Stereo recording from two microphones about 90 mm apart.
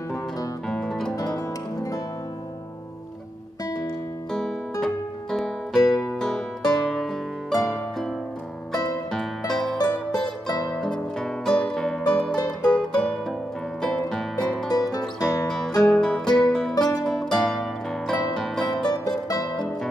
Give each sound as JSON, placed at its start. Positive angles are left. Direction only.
{"t": 0.7, "sound": "music", "side_deg": 5}
{"t": 1.1, "sound": "music", "side_deg": 45}
{"t": 4.3, "sound": "music", "side_deg": 5}
{"t": 14.7, "sound": "music", "side_deg": 45}
{"t": 15.2, "sound": "music", "side_deg": 5}
{"t": 19.0, "sound": "music", "side_deg": 45}